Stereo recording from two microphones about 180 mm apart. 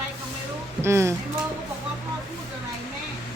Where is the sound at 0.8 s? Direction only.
15° right (ahead or behind).